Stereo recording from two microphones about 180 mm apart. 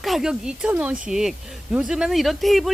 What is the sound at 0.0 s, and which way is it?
Speech, centre (ahead or behind).